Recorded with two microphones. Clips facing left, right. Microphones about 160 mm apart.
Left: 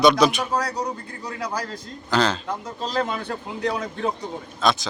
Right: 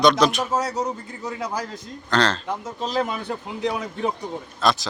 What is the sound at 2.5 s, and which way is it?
A man's voice, 20° right (ahead or behind).